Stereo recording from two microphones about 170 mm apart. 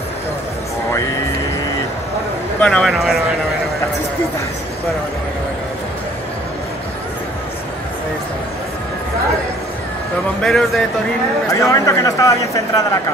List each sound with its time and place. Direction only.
2.6 s a man's voice: 5° left (ahead or behind)
10.4 s a man's voice: centre (ahead or behind)
11.4 s speech: 20° left (ahead or behind)